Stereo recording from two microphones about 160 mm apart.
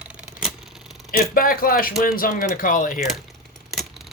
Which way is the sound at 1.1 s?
65° left (ahead or behind).